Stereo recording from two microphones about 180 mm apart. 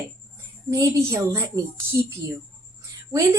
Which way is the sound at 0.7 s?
15° right (ahead or behind).